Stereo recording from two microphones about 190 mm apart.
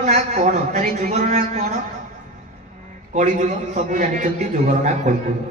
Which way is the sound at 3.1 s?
40° right (ahead or behind).